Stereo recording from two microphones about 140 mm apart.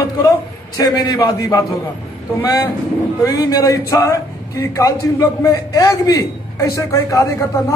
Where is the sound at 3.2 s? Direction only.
25° left (ahead or behind).